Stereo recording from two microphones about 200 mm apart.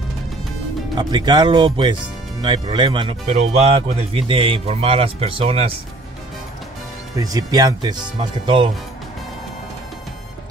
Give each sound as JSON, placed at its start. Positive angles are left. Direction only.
{"t": 0.9, "sound": "speech", "side_deg": -20}
{"t": 7.2, "sound": "speech", "side_deg": -20}